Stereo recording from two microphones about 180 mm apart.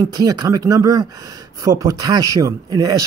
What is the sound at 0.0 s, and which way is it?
Speech, 20° right (ahead or behind).